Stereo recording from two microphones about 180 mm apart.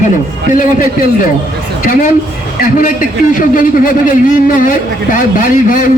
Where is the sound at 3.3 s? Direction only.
50° left (ahead or behind).